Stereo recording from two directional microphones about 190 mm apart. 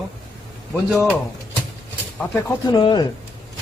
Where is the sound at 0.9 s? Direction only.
Centre (ahead or behind).